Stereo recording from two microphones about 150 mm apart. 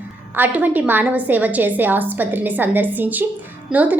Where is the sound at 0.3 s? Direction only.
10° right (ahead or behind).